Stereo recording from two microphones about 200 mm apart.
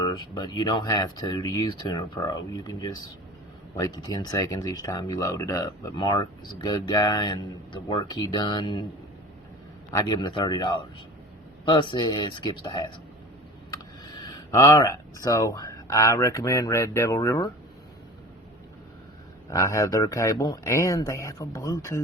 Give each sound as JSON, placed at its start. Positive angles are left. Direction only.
{"t": 0.0, "sound": "speech", "side_deg": 20}
{"t": 9.9, "sound": "speech", "side_deg": 20}
{"t": 14.0, "sound": "speech", "side_deg": 20}
{"t": 19.5, "sound": "speech", "side_deg": 15}